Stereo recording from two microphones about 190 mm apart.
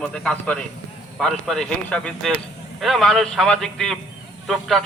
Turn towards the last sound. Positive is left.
turn(degrees=0)  # may be behind; listen again after turning